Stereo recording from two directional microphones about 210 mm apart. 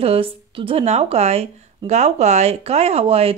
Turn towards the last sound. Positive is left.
turn(degrees=-30)  # may be behind; listen again after turning